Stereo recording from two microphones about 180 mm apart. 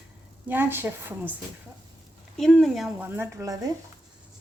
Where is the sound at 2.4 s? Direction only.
5° left (ahead or behind).